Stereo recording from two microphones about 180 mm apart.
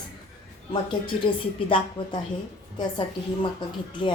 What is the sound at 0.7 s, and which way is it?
Speech, 30° left (ahead or behind).